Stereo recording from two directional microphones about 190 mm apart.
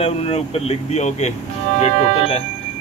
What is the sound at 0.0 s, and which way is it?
Speech, 30° left (ahead or behind).